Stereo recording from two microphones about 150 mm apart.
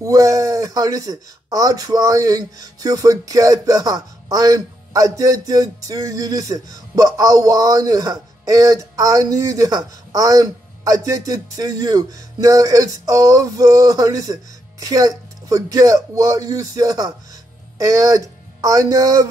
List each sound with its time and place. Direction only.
0.0 s speech: 20° right (ahead or behind)